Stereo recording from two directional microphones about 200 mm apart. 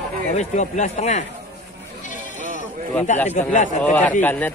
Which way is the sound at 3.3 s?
35° left (ahead or behind).